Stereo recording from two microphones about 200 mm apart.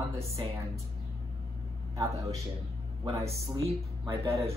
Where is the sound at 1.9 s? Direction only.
15° right (ahead or behind).